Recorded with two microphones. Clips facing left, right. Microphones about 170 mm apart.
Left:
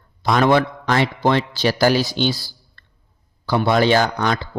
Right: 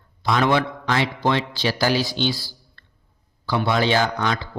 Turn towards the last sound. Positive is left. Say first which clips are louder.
# left 3 dB
turn(degrees=45)  # may be behind; listen again after turning